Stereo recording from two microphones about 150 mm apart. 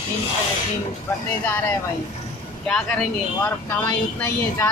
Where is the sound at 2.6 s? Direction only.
5° left (ahead or behind).